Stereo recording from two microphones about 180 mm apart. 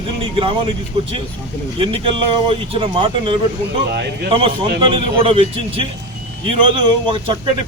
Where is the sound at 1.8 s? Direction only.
30° right (ahead or behind).